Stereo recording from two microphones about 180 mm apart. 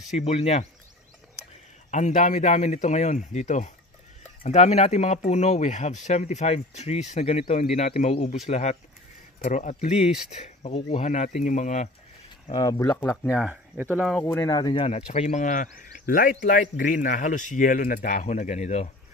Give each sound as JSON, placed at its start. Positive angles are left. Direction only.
{"t": 0.1, "sound": "speech", "side_deg": 35}
{"t": 1.9, "sound": "speech", "side_deg": 40}
{"t": 12.4, "sound": "speech", "side_deg": 20}
{"t": 13.3, "sound": "speech", "side_deg": -5}
{"t": 14.2, "sound": "speech", "side_deg": 15}